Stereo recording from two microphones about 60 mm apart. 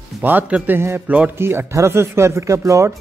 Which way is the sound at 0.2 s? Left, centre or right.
Right.